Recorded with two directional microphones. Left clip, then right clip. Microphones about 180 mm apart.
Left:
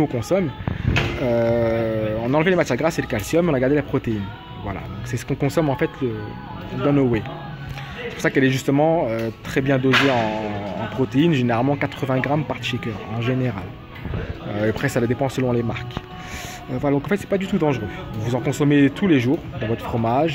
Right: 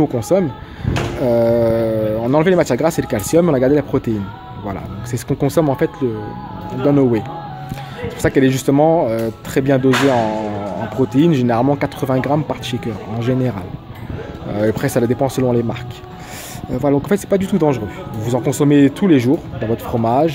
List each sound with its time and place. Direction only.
0.0 s speech: 30° right (ahead or behind)